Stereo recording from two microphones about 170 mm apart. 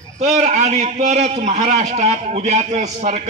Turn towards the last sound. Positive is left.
turn(degrees=-45)  # may be behind; listen again after turning